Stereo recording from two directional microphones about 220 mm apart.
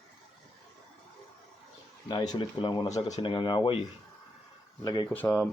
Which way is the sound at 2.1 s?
20° left (ahead or behind).